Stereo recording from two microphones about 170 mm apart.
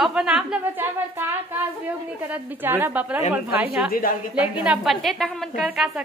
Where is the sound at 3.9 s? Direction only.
60° left (ahead or behind).